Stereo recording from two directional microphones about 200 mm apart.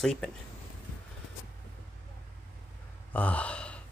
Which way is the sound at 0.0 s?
Centre (ahead or behind).